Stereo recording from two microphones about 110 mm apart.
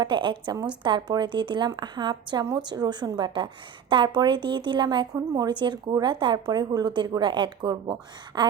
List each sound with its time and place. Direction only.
0.0 s a woman's voice: 45° right (ahead or behind)
5.1 s a woman's voice: 35° right (ahead or behind)